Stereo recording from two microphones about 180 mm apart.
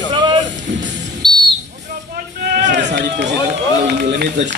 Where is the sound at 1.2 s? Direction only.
25° right (ahead or behind).